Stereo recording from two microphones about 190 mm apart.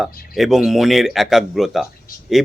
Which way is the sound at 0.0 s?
Centre (ahead or behind).